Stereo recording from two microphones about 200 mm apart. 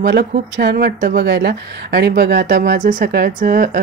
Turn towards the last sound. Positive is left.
turn(degrees=-45)  # may be behind; listen again after turning